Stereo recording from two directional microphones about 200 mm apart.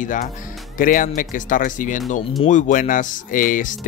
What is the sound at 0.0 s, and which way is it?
Speech, 40° left (ahead or behind).